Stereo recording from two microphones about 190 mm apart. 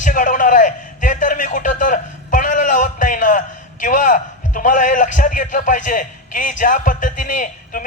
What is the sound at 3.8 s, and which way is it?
A man's voice, 45° left (ahead or behind).